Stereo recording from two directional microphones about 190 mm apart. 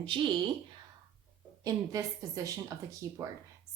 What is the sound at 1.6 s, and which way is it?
A woman's voice, 15° right (ahead or behind).